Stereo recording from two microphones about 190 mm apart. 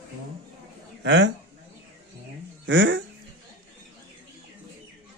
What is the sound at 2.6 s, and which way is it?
Speech, 75° right (ahead or behind).